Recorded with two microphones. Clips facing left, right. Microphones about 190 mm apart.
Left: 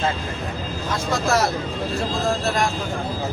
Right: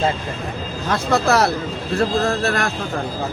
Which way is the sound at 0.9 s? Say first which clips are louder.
Right 5 dB; 65° right (ahead or behind).